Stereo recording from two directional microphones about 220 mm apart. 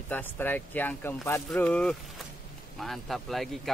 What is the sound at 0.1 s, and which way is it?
Speech, 10° left (ahead or behind).